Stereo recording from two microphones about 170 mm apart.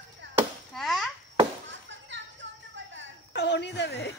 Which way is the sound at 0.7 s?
Centre (ahead or behind).